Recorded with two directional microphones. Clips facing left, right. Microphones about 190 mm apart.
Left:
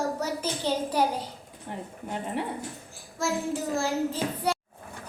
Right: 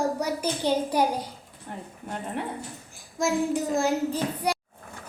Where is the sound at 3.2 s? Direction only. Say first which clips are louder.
Right 4 dB; 15° right (ahead or behind).